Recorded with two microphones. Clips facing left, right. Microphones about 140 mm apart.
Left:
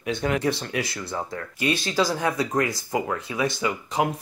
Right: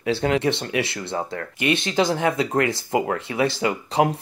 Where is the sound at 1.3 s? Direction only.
65° right (ahead or behind).